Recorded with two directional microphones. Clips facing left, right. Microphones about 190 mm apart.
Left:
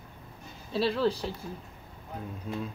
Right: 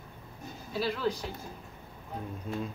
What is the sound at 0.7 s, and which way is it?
Speech, 30° left (ahead or behind).